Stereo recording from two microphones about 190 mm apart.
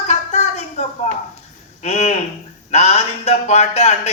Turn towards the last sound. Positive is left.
turn(degrees=35)  # may be behind; listen again after turning